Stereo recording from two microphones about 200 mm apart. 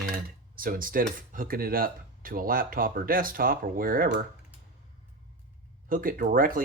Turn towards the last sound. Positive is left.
turn(degrees=-45)  # may be behind; listen again after turning